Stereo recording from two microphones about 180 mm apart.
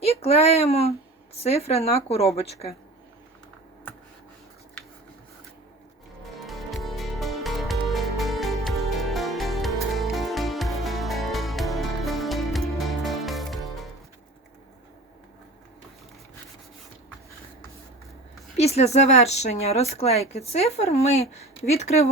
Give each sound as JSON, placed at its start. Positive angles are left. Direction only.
{"t": 0.0, "sound": "speech", "side_deg": 35}
{"t": 6.4, "sound": "music", "side_deg": 0}
{"t": 18.5, "sound": "speech", "side_deg": 35}